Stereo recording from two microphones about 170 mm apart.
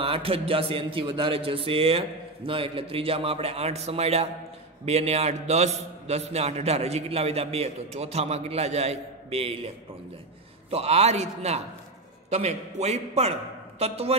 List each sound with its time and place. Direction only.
0.0 s a man's voice: 35° right (ahead or behind)
10.7 s a man's voice: 40° right (ahead or behind)